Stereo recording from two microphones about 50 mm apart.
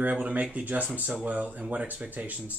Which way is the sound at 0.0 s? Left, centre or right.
Right.